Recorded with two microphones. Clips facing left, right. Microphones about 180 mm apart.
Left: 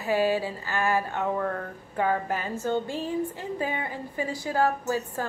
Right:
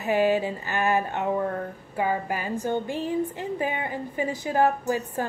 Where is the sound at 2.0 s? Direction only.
10° right (ahead or behind).